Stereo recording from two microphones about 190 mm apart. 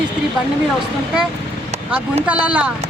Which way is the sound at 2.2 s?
5° right (ahead or behind).